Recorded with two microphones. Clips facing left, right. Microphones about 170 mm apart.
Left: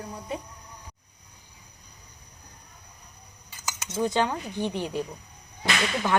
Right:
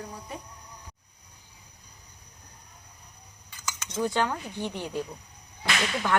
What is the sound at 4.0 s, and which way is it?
Speech, 15° left (ahead or behind).